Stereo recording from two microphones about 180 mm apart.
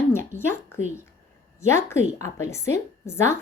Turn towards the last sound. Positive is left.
turn(degrees=15)  # may be behind; listen again after turning